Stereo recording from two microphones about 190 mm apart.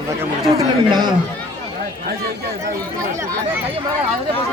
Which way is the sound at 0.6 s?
25° right (ahead or behind).